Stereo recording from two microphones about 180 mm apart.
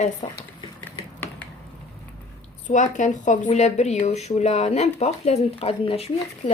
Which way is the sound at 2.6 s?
45° left (ahead or behind).